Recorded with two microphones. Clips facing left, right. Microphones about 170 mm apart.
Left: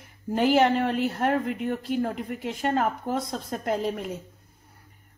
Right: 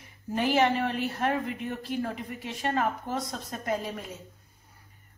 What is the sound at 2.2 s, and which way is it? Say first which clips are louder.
Speech: left 6 dB; 55° left (ahead or behind).